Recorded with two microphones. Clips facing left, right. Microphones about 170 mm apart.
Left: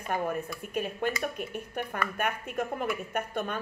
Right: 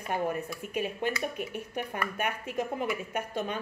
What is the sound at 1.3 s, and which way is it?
Speech, 50° left (ahead or behind).